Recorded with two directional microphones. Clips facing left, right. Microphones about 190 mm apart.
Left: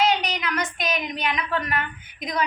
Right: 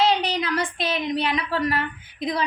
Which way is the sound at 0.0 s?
30° right (ahead or behind).